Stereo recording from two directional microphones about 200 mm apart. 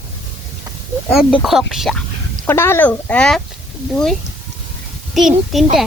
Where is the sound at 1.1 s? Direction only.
Centre (ahead or behind).